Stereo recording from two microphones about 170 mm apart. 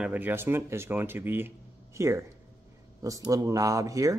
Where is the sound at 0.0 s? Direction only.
10° right (ahead or behind).